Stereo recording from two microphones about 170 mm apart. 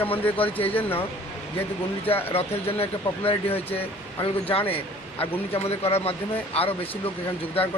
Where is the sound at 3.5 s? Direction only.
10° left (ahead or behind).